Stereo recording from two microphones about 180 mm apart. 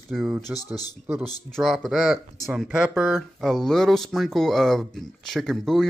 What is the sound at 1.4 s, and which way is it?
Speech, centre (ahead or behind).